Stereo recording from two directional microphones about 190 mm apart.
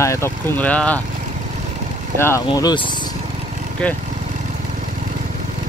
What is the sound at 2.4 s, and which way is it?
Speech, 25° left (ahead or behind).